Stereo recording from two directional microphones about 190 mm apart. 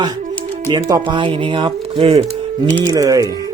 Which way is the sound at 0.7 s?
20° right (ahead or behind).